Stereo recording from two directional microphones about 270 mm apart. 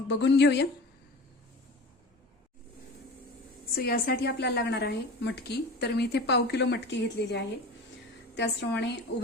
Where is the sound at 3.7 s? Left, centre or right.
Left.